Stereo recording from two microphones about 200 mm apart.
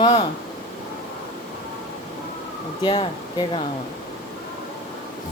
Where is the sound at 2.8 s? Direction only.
30° left (ahead or behind).